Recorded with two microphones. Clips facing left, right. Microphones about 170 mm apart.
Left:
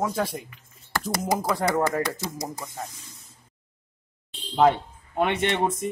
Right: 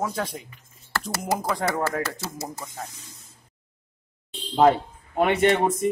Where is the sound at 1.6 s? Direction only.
15° left (ahead or behind).